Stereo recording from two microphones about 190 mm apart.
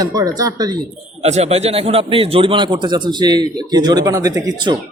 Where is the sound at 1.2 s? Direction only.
35° right (ahead or behind).